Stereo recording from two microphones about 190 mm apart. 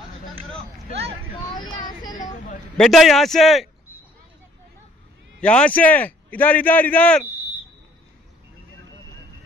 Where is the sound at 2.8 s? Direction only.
Centre (ahead or behind).